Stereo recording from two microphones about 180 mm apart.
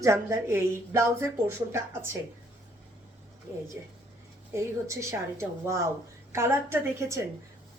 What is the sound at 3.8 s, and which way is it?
A woman's voice, 10° right (ahead or behind).